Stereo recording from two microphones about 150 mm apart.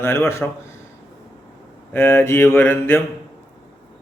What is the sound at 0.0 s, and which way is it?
Speech, 15° left (ahead or behind).